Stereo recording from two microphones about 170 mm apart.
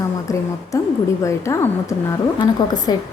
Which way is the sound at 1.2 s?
15° left (ahead or behind).